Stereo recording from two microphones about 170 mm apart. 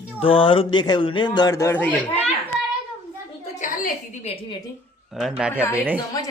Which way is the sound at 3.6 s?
50° left (ahead or behind).